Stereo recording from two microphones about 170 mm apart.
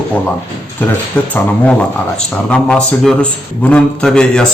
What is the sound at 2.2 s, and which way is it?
Speech, 5° left (ahead or behind).